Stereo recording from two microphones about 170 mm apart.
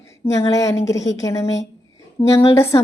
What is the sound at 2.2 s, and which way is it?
Speech, 35° left (ahead or behind).